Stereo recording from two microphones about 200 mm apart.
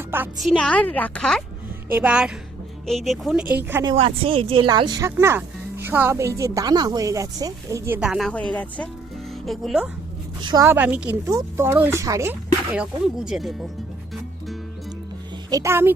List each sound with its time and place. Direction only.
0.1 s speech: 10° right (ahead or behind)
0.4 s a woman's voice: 5° left (ahead or behind)
3.5 s speech: 10° right (ahead or behind)
3.8 s a woman's voice: 25° right (ahead or behind); by 9.9 s centre (ahead or behind)
10.4 s speech: 20° right (ahead or behind); by 13.7 s centre (ahead or behind)
15.4 s speech: 15° right (ahead or behind)